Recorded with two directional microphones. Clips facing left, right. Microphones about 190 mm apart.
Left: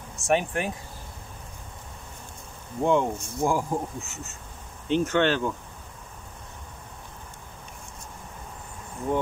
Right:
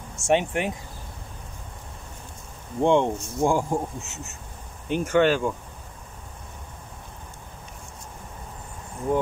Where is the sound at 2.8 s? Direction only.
25° right (ahead or behind).